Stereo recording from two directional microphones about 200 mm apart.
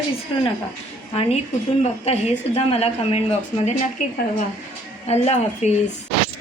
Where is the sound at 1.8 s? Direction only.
30° left (ahead or behind).